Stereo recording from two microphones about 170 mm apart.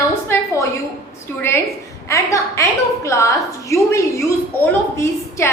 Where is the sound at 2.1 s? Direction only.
20° left (ahead or behind).